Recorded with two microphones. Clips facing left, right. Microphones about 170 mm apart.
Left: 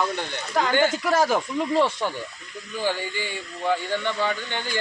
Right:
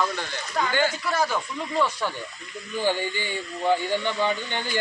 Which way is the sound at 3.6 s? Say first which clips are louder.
Right 1 dB; 15° right (ahead or behind).